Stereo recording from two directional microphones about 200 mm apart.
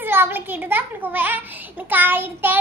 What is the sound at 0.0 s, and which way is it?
A child's voice, 10° right (ahead or behind).